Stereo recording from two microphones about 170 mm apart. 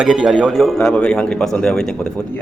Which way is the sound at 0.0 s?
5° right (ahead or behind).